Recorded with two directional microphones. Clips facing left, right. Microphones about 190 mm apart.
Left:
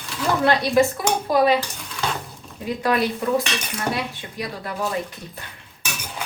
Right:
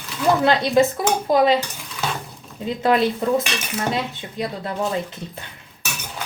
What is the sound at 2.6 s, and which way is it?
Speech, 25° right (ahead or behind).